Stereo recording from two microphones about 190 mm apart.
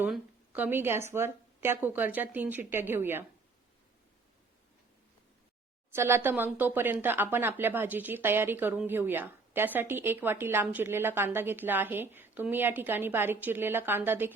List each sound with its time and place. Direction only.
0.0 s speech: 10° right (ahead or behind)
5.9 s speech: 15° right (ahead or behind)